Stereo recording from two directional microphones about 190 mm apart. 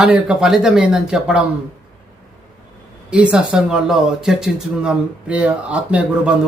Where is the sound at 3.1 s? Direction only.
5° right (ahead or behind).